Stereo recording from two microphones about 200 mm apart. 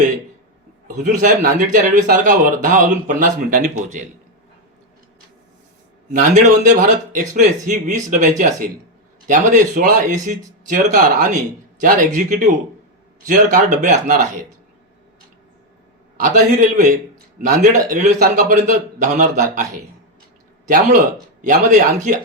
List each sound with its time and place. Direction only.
1.0 s a man's voice: 40° right (ahead or behind)
6.1 s a man's voice: 40° right (ahead or behind)
11.8 s a man's voice: 40° right (ahead or behind)
16.1 s a man's voice: 40° right (ahead or behind)
20.7 s a man's voice: 45° right (ahead or behind)